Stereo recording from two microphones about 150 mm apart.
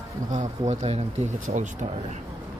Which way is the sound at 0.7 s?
45° right (ahead or behind).